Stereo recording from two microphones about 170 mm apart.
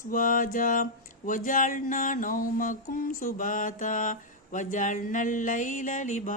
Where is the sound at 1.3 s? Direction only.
50° left (ahead or behind).